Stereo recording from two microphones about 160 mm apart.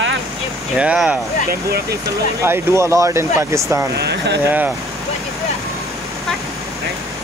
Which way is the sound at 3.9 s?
90° right.